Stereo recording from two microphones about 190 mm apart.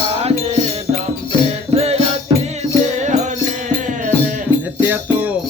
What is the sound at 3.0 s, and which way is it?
Music, 40° right (ahead or behind).